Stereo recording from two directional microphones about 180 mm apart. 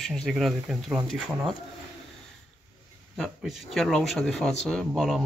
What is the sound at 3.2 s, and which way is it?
Speech, centre (ahead or behind).